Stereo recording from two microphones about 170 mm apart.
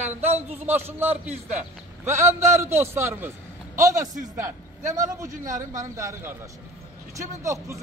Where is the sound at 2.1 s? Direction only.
15° right (ahead or behind).